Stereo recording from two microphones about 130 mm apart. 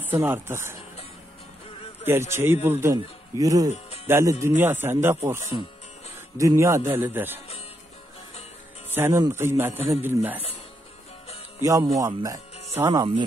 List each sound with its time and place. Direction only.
0.0 s speech: 15° right (ahead or behind)
2.0 s speech: 20° right (ahead or behind)
8.9 s speech: 20° right (ahead or behind)
11.6 s speech: 25° right (ahead or behind)